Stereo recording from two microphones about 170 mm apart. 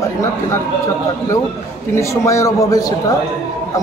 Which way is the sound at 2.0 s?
15° left (ahead or behind).